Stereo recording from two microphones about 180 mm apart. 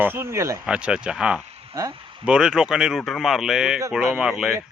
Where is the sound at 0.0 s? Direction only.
10° right (ahead or behind).